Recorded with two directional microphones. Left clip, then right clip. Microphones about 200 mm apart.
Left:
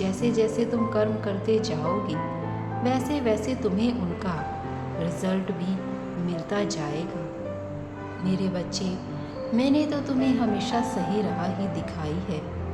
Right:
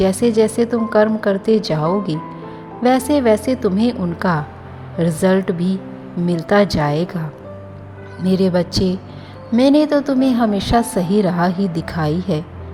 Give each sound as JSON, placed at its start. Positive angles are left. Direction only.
{"t": 0.0, "sound": "a woman's voice", "side_deg": -45}
{"t": 8.2, "sound": "a woman's voice", "side_deg": -50}